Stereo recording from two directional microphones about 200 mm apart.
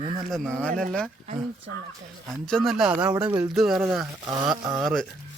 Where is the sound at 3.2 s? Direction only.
20° right (ahead or behind).